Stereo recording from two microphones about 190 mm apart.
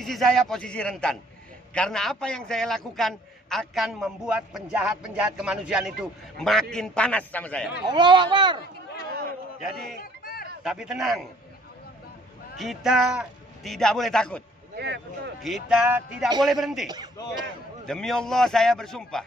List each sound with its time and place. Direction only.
0.0 s a man's voice: centre (ahead or behind)
7.8 s speech: 25° right (ahead or behind)
10.2 s a sound: 50° left (ahead or behind)
10.6 s a man's voice: 5° right (ahead or behind)
12.5 s a man's voice: centre (ahead or behind)
14.8 s speech: 60° right (ahead or behind)
15.4 s a man's voice: 5° right (ahead or behind)